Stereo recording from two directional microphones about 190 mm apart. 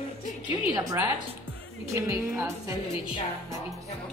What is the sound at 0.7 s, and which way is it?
A woman's voice, 15° right (ahead or behind).